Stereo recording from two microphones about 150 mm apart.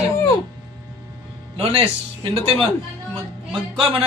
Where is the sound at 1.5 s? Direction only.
40° right (ahead or behind).